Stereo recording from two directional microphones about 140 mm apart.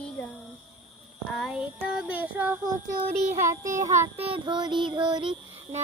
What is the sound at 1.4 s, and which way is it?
Child singing, 5° right (ahead or behind).